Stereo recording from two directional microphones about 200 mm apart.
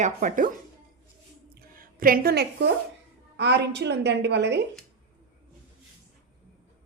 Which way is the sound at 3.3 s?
60° right (ahead or behind).